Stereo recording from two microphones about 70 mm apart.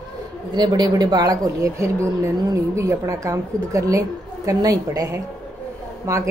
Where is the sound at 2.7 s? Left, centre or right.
Right.